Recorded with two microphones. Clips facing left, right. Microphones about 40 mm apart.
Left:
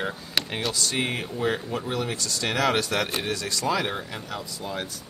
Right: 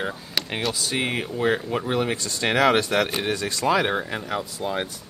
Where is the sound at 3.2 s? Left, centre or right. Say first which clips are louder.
Right 4 dB; right.